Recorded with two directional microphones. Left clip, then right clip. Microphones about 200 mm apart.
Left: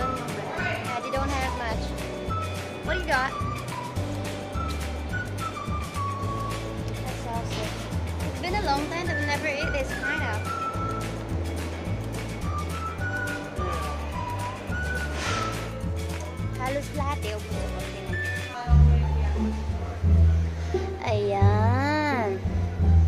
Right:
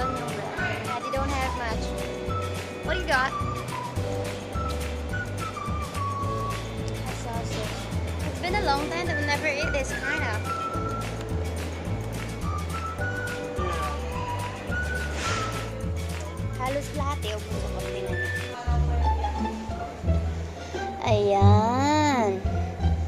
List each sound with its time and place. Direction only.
1.1 s music: centre (ahead or behind)
2.9 s speech: 5° right (ahead or behind)
8.5 s speech: 10° right (ahead or behind)
16.6 s music: 5° right (ahead or behind)
21.0 s a sound: 20° right (ahead or behind)